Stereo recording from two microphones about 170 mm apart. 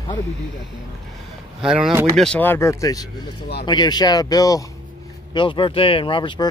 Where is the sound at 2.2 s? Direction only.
10° left (ahead or behind); by 6.4 s 30° left (ahead or behind).